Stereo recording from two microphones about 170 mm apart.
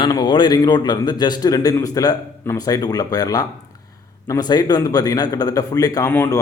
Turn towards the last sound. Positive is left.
turn(degrees=15)  # may be behind; listen again after turning